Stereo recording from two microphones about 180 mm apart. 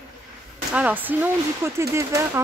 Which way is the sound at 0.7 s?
10° right (ahead or behind).